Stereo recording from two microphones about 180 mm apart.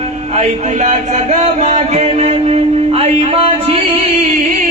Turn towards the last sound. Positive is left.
turn(degrees=-35)  # may be behind; listen again after turning